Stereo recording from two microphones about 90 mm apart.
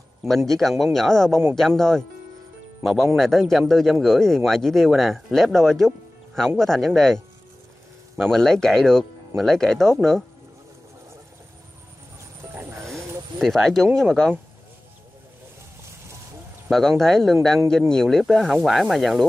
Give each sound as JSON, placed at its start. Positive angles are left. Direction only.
{"t": 0.2, "sound": "speech", "side_deg": 5}
{"t": 8.2, "sound": "speech", "side_deg": 5}
{"t": 12.5, "sound": "music", "side_deg": -20}
{"t": 12.8, "sound": "a sound", "side_deg": 5}
{"t": 13.9, "sound": "speech", "side_deg": 5}
{"t": 16.6, "sound": "speech", "side_deg": 5}